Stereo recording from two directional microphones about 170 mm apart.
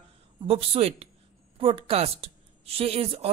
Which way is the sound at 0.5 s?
35° right (ahead or behind).